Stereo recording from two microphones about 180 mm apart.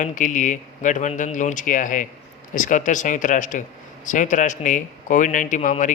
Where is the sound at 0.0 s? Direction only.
45° left (ahead or behind).